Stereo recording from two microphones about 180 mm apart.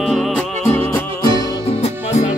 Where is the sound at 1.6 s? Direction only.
35° left (ahead or behind).